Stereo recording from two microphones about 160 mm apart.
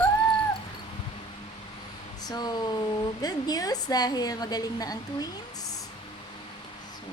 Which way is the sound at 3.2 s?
25° left (ahead or behind).